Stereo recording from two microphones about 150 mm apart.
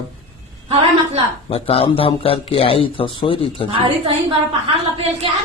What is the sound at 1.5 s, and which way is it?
Speech, 40° left (ahead or behind).